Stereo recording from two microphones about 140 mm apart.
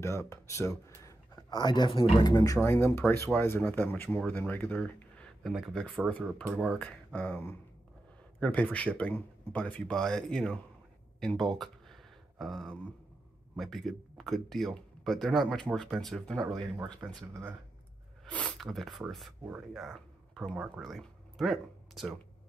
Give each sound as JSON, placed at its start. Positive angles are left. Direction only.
{"t": 0.0, "sound": "speech", "side_deg": 20}
{"t": 2.3, "sound": "speech", "side_deg": 25}
{"t": 5.4, "sound": "speech", "side_deg": 0}
{"t": 11.1, "sound": "a sound", "side_deg": 5}
{"t": 13.6, "sound": "speech", "side_deg": 0}
{"t": 17.0, "sound": "speech", "side_deg": -15}
{"t": 18.2, "sound": "speech", "side_deg": 10}